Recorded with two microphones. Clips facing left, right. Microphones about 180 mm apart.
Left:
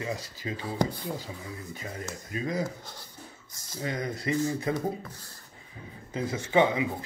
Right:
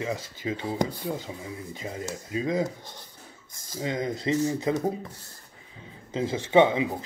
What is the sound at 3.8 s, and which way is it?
Speech, 20° right (ahead or behind).